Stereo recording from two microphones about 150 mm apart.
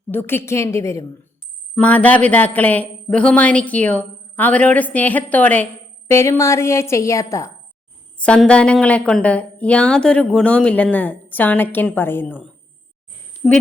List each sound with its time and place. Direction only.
0.1 s speech: 15° left (ahead or behind)
1.7 s a woman's voice: 10° left (ahead or behind)
8.2 s speech: 5° left (ahead or behind)